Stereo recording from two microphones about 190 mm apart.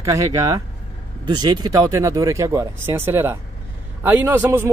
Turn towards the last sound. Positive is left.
turn(degrees=-10)  # may be behind; listen again after turning